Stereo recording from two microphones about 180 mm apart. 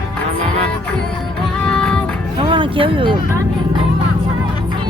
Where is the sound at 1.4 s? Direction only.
5° left (ahead or behind).